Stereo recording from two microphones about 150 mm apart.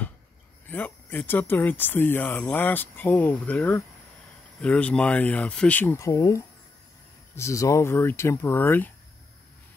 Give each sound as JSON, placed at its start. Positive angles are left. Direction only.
{"t": 0.7, "sound": "speech", "side_deg": 10}